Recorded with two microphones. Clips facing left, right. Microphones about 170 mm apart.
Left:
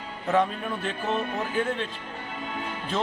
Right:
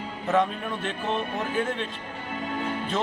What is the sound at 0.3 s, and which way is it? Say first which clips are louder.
Speech: even; centre (ahead or behind).